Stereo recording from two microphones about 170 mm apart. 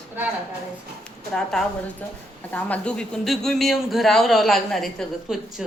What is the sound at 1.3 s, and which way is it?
Speech, 5° left (ahead or behind).